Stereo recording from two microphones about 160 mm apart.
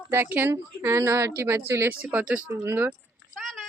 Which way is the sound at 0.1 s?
15° right (ahead or behind).